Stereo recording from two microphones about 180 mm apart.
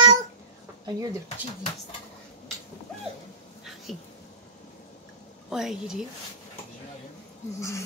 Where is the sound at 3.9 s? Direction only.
Centre (ahead or behind).